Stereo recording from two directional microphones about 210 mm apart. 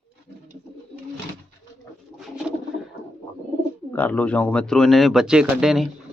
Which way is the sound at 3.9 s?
10° left (ahead or behind).